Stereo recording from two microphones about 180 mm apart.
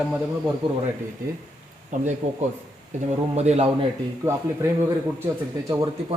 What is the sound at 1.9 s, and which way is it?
Speech, 45° right (ahead or behind).